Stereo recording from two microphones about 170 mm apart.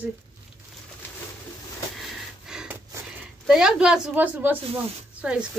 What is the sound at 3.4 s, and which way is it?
A woman's voice, 5° right (ahead or behind).